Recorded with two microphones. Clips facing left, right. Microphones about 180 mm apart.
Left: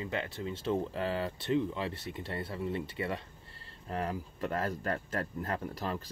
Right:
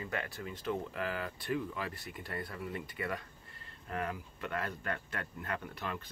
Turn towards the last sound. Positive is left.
turn(degrees=35)  # may be behind; listen again after turning